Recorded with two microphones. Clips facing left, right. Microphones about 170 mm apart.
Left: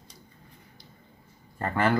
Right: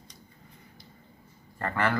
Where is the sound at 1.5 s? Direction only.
20° left (ahead or behind).